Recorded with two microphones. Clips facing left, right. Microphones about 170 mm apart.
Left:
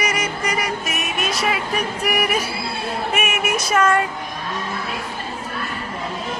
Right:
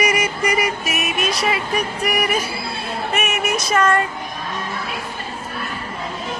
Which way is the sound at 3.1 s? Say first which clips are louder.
Right 2 dB; 10° left (ahead or behind).